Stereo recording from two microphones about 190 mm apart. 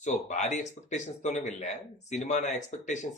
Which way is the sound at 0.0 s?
40° left (ahead or behind).